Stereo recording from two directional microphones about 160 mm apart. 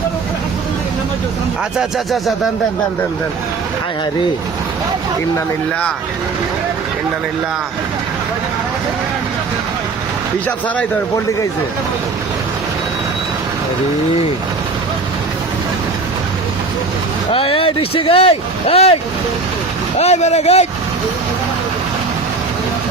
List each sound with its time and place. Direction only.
17.3 s speech: 35° left (ahead or behind)
20.0 s speech: 45° left (ahead or behind)